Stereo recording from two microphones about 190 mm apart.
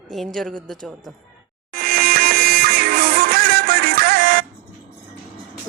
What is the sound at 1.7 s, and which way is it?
Music, 50° right (ahead or behind).